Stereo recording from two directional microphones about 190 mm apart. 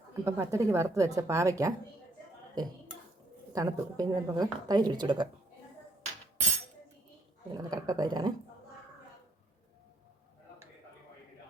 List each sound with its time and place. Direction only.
0.3 s a woman's voice: 15° right (ahead or behind)
3.5 s speech: 20° right (ahead or behind)
7.5 s speech: 20° right (ahead or behind)